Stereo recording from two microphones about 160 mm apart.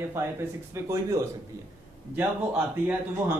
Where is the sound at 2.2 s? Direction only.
10° right (ahead or behind).